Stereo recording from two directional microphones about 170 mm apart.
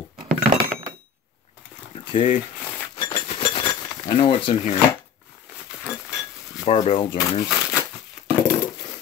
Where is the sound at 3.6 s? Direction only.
25° left (ahead or behind).